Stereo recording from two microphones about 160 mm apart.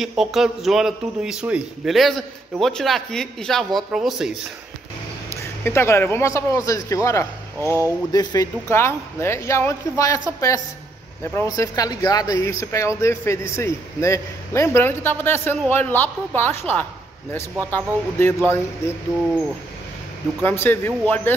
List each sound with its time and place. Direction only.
0.0 s a man's voice: centre (ahead or behind)
5.6 s a man's voice: 15° left (ahead or behind)
7.6 s speech: 15° right (ahead or behind)
8.1 s speech: 25° left (ahead or behind)
11.3 s speech: 20° left (ahead or behind)
20.4 s speech: 15° left (ahead or behind)